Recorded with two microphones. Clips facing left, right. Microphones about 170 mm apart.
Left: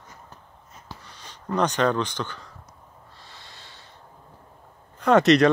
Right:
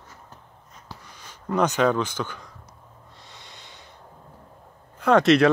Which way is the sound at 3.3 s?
20° right (ahead or behind).